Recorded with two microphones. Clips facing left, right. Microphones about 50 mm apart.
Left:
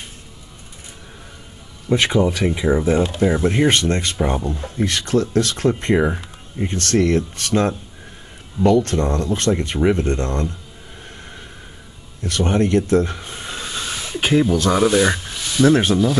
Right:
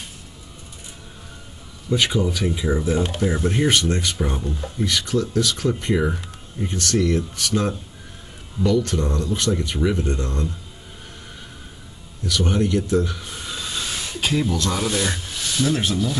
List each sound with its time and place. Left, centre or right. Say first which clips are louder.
1.9 s speech: left 4 dB; left
12.2 s a sound: left 3 dB; left
14.2 s speech: left 6 dB; left
15.6 s speech: left 8 dB; left